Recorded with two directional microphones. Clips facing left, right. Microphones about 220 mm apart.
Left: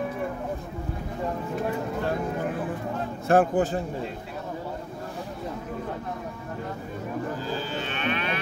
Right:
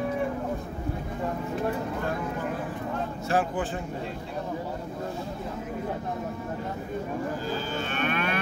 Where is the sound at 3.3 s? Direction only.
55° left (ahead or behind).